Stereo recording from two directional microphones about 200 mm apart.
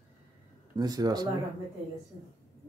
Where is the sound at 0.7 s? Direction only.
20° right (ahead or behind).